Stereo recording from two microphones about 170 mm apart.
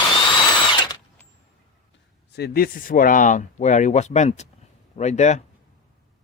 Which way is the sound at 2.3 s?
65° left (ahead or behind).